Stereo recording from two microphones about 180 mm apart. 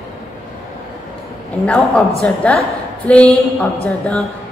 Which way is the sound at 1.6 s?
5° left (ahead or behind).